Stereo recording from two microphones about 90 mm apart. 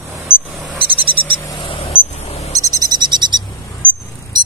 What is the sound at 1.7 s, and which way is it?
Vehicle, 90° left.